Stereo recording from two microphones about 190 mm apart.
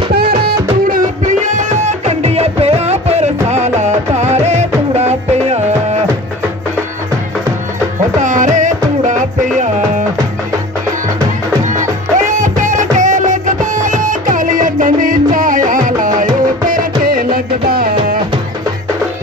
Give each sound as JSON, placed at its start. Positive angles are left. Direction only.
{"t": 0.1, "sound": "music", "side_deg": -55}
{"t": 8.2, "sound": "music", "side_deg": -40}
{"t": 11.7, "sound": "music", "side_deg": -40}